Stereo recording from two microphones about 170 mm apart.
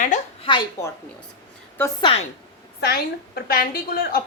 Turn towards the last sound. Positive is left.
turn(degrees=65)  # may be behind; listen again after turning